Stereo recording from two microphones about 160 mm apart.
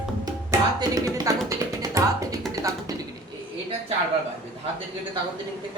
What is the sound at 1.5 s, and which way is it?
Music, 20° right (ahead or behind).